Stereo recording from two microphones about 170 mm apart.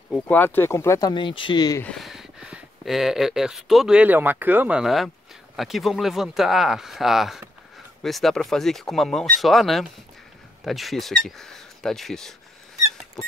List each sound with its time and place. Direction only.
0.1 s speech: 10° left (ahead or behind)
1.8 s speech: 5° left (ahead or behind)